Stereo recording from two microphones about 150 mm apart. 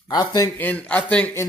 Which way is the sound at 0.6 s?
10° left (ahead or behind).